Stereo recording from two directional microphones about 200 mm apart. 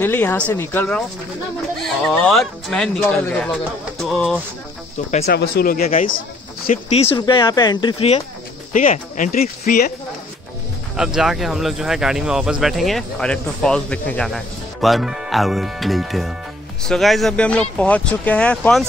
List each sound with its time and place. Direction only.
0.0 s speech: 10° left (ahead or behind)
5.2 s speech: 50° left (ahead or behind); by 8.2 s 25° left (ahead or behind)
8.7 s speech: 40° left (ahead or behind)
11.1 s speech: centre (ahead or behind)